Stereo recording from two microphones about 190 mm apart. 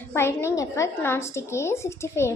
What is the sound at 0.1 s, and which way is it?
A woman's voice, 15° left (ahead or behind).